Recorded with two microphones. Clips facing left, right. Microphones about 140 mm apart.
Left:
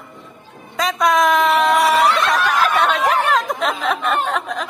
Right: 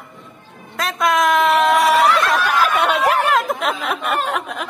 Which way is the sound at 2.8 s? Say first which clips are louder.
Even; 5° right (ahead or behind).